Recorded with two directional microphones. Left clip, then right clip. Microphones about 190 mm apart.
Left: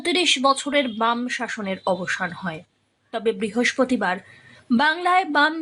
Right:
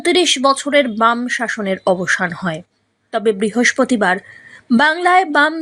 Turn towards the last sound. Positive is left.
turn(degrees=-25)  # may be behind; listen again after turning